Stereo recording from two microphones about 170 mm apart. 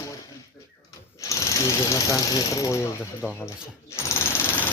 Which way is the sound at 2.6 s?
20° left (ahead or behind).